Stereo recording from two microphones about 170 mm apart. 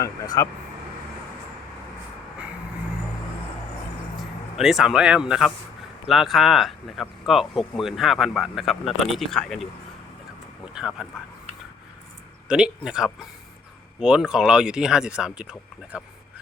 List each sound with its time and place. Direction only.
0.0 s speech: 20° left (ahead or behind)
4.2 s speech: centre (ahead or behind)
10.8 s speech: 5° right (ahead or behind)
12.5 s speech: 5° right (ahead or behind)